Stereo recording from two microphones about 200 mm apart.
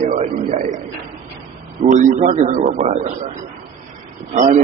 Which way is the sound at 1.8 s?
40° right (ahead or behind).